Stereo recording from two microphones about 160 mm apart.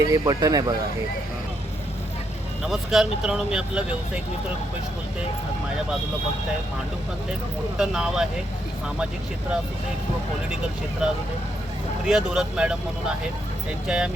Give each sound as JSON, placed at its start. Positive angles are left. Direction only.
{"t": 0.0, "sound": "speech", "side_deg": -25}
{"t": 2.6, "sound": "speech", "side_deg": 0}
{"t": 7.8, "sound": "speech", "side_deg": -5}
{"t": 12.0, "sound": "speech", "side_deg": -5}
{"t": 13.8, "sound": "speech", "side_deg": -5}